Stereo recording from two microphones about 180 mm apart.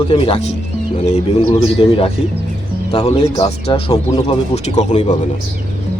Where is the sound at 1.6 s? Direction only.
30° left (ahead or behind).